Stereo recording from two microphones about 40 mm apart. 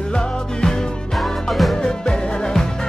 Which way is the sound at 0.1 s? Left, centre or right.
Centre.